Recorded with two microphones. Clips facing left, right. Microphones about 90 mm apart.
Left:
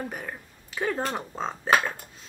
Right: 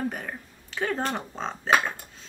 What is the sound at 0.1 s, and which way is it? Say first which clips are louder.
Speech: right 1 dB; 5° left (ahead or behind).